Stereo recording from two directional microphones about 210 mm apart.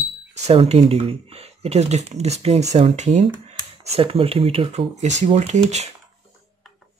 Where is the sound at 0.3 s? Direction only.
30° right (ahead or behind).